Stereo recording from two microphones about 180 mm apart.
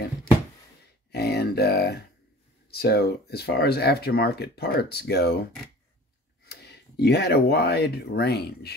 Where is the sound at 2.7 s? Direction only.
60° left (ahead or behind).